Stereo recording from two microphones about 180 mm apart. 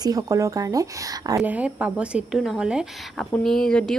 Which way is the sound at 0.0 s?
20° right (ahead or behind).